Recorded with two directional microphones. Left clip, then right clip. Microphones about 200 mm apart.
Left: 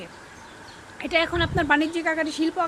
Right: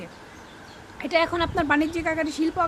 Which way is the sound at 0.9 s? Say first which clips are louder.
Even; 15° right (ahead or behind).